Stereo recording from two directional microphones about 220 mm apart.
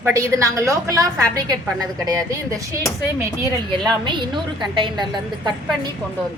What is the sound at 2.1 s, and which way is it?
A woman's voice, 15° right (ahead or behind).